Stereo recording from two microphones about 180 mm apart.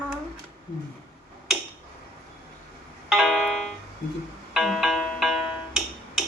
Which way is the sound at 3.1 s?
Centre (ahead or behind).